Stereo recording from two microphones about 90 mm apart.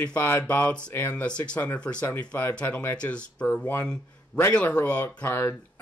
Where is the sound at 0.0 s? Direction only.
20° left (ahead or behind).